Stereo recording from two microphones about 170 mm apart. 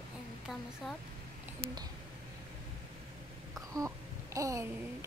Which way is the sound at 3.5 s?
20° right (ahead or behind).